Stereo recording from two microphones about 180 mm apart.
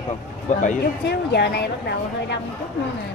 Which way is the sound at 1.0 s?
65° left (ahead or behind).